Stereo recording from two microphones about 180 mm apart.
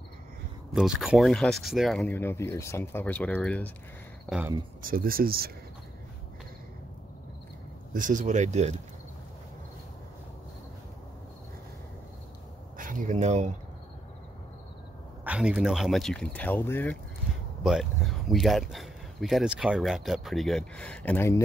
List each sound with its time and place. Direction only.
0.7 s speech: centre (ahead or behind)
4.8 s speech: 55° right (ahead or behind)
7.9 s speech: 45° right (ahead or behind)
12.7 s a sound: 50° right (ahead or behind)
15.2 s speech: 5° right (ahead or behind); by 17.0 s 10° left (ahead or behind)
18.3 s speech: centre (ahead or behind)